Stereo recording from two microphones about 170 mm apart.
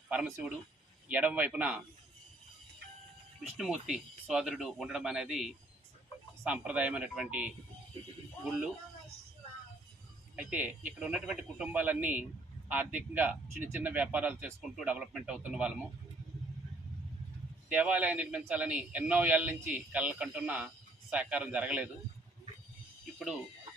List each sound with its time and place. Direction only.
0.1 s a man's voice: 5° right (ahead or behind)
3.6 s a man's voice: 5° right (ahead or behind)
10.5 s a man's voice: 10° right (ahead or behind)
17.7 s a man's voice: 10° right (ahead or behind)